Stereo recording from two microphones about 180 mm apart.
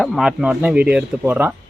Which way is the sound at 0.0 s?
Centre (ahead or behind).